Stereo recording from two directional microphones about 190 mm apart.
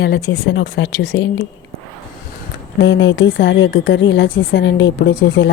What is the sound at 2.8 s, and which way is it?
A woman's voice, 75° left (ahead or behind).